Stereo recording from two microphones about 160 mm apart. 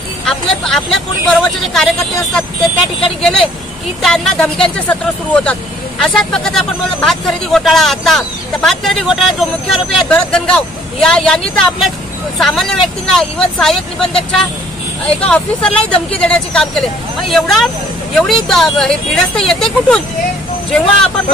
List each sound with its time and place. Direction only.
0.3 s speech: 5° left (ahead or behind)